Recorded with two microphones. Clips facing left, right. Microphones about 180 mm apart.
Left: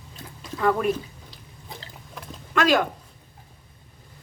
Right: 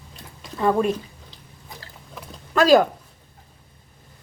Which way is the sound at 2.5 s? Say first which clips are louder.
Right 6 dB; 35° right (ahead or behind).